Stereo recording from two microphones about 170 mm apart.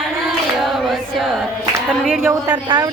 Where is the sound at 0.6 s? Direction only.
Centre (ahead or behind).